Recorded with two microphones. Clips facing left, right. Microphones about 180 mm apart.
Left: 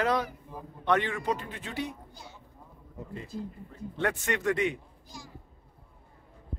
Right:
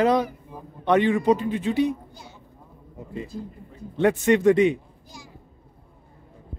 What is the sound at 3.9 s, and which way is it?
Speech, 20° right (ahead or behind).